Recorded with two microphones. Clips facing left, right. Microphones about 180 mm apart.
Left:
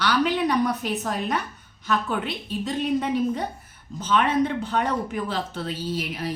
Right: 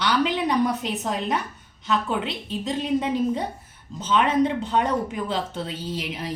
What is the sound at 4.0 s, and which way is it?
A woman's voice, 20° right (ahead or behind).